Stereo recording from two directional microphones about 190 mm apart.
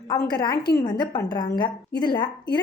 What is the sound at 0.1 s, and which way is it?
Speech, 20° left (ahead or behind).